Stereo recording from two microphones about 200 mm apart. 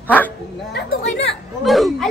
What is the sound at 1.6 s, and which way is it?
Speech, centre (ahead or behind).